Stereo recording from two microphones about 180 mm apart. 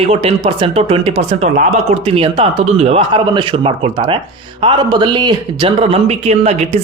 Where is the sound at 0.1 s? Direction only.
35° right (ahead or behind).